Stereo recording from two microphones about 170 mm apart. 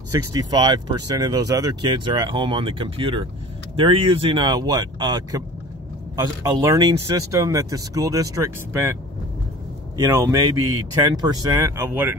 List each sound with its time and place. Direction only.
0.1 s speech: 25° right (ahead or behind)
9.9 s speech: 15° right (ahead or behind)